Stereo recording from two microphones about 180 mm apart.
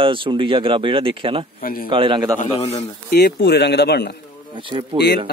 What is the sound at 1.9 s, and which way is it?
Speech, 25° right (ahead or behind).